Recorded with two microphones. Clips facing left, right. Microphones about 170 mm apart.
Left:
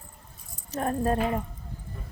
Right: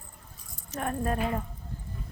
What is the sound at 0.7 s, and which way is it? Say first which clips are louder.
Keys jangling: left 4 dB; 35° left (ahead or behind).